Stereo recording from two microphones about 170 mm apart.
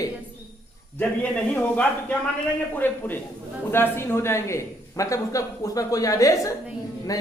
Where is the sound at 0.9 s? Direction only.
5° left (ahead or behind).